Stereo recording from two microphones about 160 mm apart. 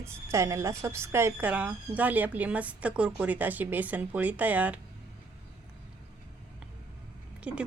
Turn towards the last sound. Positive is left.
turn(degrees=-5)  # may be behind; listen again after turning